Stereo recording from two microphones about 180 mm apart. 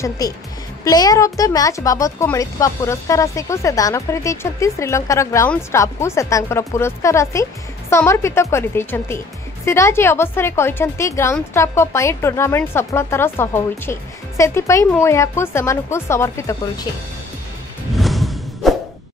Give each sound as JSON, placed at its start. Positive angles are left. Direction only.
{"t": 0.2, "sound": "a woman's voice", "side_deg": 20}
{"t": 17.9, "sound": "music", "side_deg": 0}